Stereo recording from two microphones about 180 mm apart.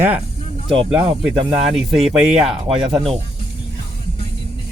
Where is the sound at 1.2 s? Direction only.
5° right (ahead or behind).